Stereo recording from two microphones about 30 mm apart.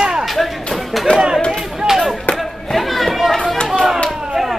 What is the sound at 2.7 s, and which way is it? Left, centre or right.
Chatter, centre.